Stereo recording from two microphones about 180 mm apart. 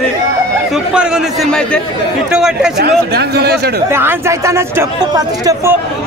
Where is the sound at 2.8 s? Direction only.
65° right (ahead or behind).